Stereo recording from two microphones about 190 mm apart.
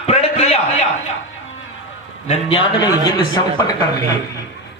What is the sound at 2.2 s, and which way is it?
A man's voice, 35° left (ahead or behind).